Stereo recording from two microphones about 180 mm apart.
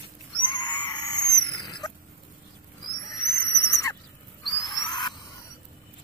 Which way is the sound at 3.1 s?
15° left (ahead or behind).